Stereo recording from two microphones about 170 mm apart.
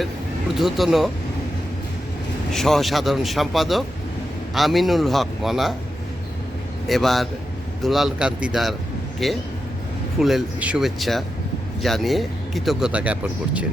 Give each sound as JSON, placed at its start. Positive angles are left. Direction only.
{"t": 0.5, "sound": "speech", "side_deg": 0}
{"t": 2.5, "sound": "speech", "side_deg": 0}
{"t": 6.8, "sound": "speech", "side_deg": 0}